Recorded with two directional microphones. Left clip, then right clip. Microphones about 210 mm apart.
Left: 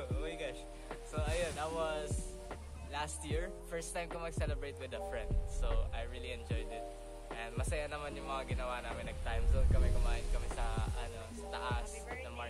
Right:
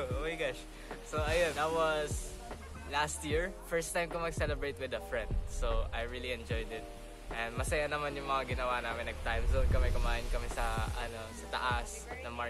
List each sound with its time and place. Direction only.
0.0 s music: centre (ahead or behind)
1.1 s speech: 10° left (ahead or behind)